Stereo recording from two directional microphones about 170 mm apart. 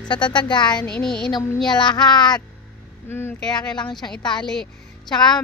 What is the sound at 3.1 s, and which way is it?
Speech, 15° left (ahead or behind).